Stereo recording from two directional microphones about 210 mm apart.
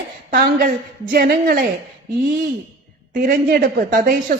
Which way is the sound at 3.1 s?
40° right (ahead or behind).